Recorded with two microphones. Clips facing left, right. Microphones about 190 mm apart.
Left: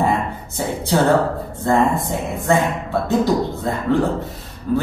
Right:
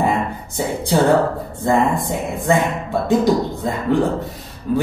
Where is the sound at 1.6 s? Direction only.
15° right (ahead or behind).